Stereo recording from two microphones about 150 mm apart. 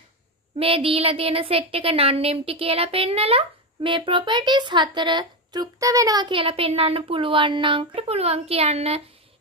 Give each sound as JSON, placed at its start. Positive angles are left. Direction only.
{"t": 0.6, "sound": "speech", "side_deg": -40}